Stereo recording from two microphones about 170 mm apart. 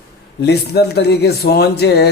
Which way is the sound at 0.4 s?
75° left (ahead or behind).